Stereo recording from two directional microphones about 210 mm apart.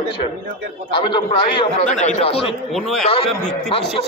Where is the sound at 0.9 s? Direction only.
20° left (ahead or behind).